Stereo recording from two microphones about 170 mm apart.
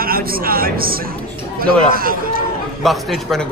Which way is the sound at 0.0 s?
60° right (ahead or behind).